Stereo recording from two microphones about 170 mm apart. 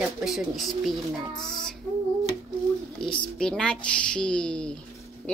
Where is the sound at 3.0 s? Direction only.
5° left (ahead or behind).